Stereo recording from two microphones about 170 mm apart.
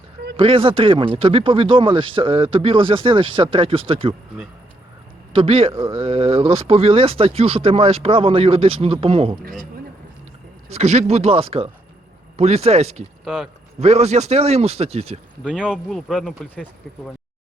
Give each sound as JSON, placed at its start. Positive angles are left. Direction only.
{"t": 0.3, "sound": "speech", "side_deg": -30}
{"t": 5.3, "sound": "speech", "side_deg": -35}
{"t": 9.4, "sound": "speech", "side_deg": -55}
{"t": 10.7, "sound": "speech", "side_deg": -40}
{"t": 13.2, "sound": "speech", "side_deg": 0}
{"t": 13.7, "sound": "speech", "side_deg": -40}
{"t": 15.5, "sound": "speech", "side_deg": -5}